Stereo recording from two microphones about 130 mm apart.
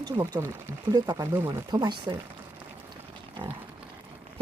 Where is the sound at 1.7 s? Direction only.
35° right (ahead or behind).